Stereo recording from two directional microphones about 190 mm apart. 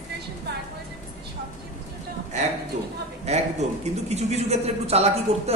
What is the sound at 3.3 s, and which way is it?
Speech, 35° right (ahead or behind).